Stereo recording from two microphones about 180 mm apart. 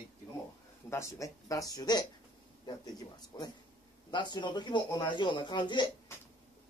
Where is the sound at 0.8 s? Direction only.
15° left (ahead or behind).